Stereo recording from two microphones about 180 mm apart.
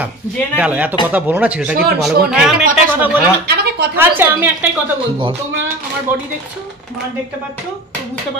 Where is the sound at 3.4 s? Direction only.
65° right (ahead or behind).